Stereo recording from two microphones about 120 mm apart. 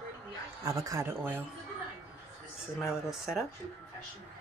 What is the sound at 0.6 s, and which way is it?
Speech, 25° right (ahead or behind).